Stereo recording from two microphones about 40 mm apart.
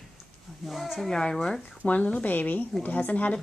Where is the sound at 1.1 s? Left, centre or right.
Centre.